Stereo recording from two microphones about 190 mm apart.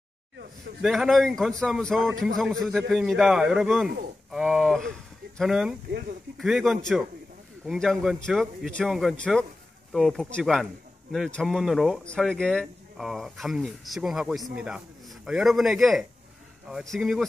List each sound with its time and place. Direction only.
0.8 s speech: centre (ahead or behind)
5.9 s speech: 50° right (ahead or behind)
6.3 s speech: centre (ahead or behind)